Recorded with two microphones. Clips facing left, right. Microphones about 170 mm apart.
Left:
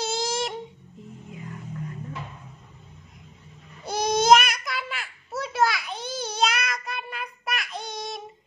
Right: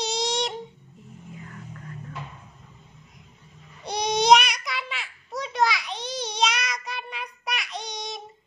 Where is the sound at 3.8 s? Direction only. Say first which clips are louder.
Left 1 dB; 5° left (ahead or behind).